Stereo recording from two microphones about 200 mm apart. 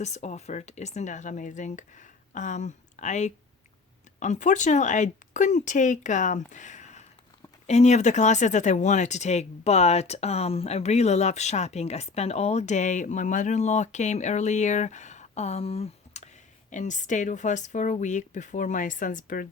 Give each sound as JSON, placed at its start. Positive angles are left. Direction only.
{"t": 0.0, "sound": "speech", "side_deg": 35}